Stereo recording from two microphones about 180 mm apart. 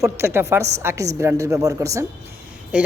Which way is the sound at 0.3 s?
15° right (ahead or behind).